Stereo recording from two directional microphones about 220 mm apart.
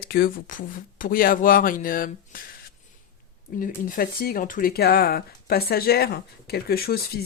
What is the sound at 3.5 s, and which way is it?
Speech, 40° left (ahead or behind).